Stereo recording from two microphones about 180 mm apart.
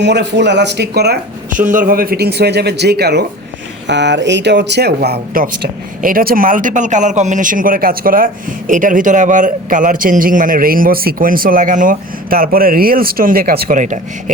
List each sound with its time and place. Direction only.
0.0 s speech: 70° right (ahead or behind)
3.8 s speech: 75° right (ahead or behind); by 14.0 s 45° right (ahead or behind)